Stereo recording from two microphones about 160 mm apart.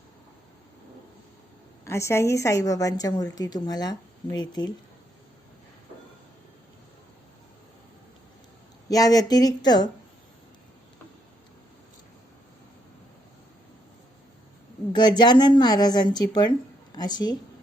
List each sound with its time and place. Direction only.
1.8 s a woman's voice: 15° left (ahead or behind)
8.9 s a woman's voice: 25° left (ahead or behind)
14.9 s a woman's voice: 25° left (ahead or behind)